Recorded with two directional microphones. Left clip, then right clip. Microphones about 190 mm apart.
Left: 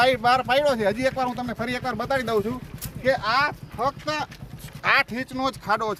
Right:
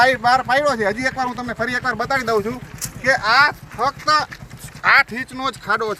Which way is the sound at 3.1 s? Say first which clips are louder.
Right 7 dB; centre (ahead or behind).